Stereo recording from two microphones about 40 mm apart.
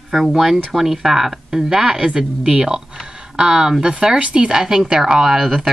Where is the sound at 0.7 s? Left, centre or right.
Centre.